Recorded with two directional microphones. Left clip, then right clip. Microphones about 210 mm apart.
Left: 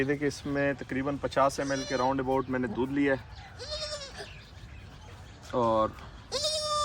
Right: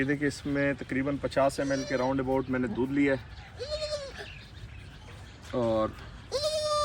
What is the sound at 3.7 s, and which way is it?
Goat, 10° right (ahead or behind).